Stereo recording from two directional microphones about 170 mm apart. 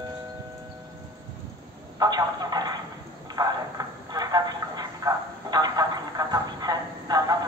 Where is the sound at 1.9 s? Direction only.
25° right (ahead or behind).